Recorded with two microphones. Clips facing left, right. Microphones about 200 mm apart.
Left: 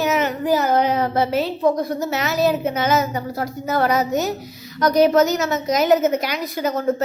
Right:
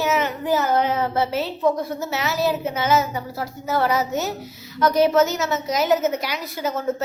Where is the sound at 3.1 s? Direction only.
45° left (ahead or behind).